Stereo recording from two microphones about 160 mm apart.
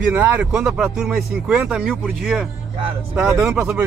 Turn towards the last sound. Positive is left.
turn(degrees=-5)  # may be behind; listen again after turning